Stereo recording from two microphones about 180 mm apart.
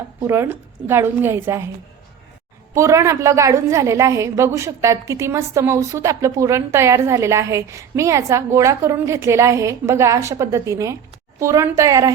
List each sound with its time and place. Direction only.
0.2 s a woman's voice: 15° right (ahead or behind)
2.7 s a woman's voice: 15° right (ahead or behind)